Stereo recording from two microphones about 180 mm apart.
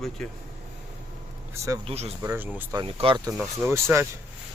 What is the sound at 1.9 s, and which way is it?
Speech, 35° right (ahead or behind).